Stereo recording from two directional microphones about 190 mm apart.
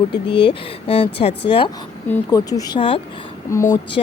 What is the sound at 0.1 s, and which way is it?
Speech, 25° left (ahead or behind).